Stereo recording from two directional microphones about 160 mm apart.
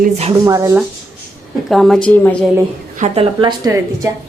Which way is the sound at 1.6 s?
Centre (ahead or behind).